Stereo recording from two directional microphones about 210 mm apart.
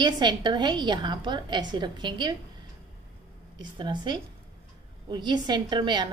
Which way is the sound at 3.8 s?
20° right (ahead or behind).